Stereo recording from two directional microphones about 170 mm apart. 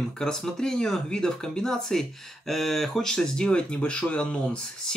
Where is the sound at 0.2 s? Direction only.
5° left (ahead or behind).